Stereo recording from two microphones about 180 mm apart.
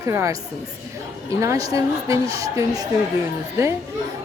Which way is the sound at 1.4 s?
20° right (ahead or behind).